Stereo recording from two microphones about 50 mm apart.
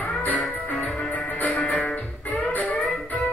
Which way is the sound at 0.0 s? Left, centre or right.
Left.